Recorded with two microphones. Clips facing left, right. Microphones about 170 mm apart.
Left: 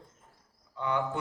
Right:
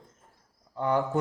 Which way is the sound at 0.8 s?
45° right (ahead or behind).